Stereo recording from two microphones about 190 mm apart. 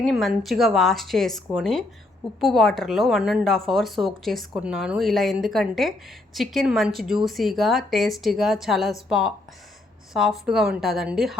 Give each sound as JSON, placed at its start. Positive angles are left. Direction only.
{"t": 0.0, "sound": "a woman's voice", "side_deg": 0}